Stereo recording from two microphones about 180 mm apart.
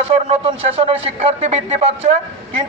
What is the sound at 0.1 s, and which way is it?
A man's voice, 30° right (ahead or behind).